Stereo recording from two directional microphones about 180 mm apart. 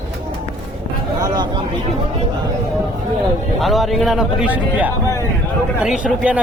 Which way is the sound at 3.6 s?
Centre (ahead or behind).